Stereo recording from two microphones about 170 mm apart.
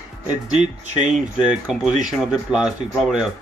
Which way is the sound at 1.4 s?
5° right (ahead or behind).